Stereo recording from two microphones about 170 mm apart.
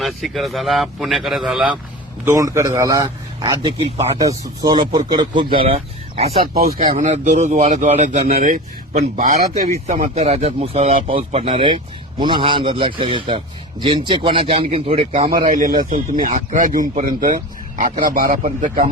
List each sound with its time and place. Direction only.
0.0 s a man's voice: centre (ahead or behind)
2.2 s a man's voice: 20° right (ahead or behind)
3.8 s a man's voice: 35° right (ahead or behind)
4.2 s speech: 20° right (ahead or behind); by 6.3 s 35° right (ahead or behind)
6.5 s a man's voice: 60° right (ahead or behind); by 15.0 s 35° right (ahead or behind)
15.3 s speech: 50° right (ahead or behind)